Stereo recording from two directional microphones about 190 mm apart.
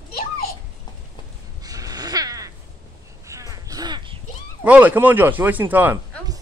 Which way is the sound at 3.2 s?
15° right (ahead or behind).